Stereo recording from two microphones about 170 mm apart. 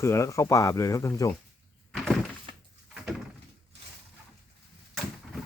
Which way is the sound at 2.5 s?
35° right (ahead or behind).